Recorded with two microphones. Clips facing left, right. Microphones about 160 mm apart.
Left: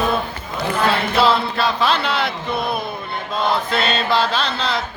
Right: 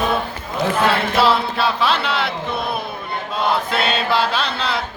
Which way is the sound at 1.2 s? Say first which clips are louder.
Left 1 dB; 5° right (ahead or behind).